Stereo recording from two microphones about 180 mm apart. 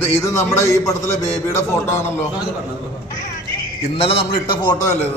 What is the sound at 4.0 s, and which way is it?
Speech, 30° left (ahead or behind).